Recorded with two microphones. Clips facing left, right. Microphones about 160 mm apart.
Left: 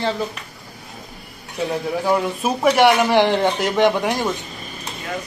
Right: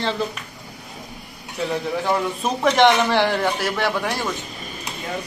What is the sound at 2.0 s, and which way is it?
A man's voice, 10° left (ahead or behind).